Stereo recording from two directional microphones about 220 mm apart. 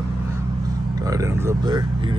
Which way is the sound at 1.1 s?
15° right (ahead or behind).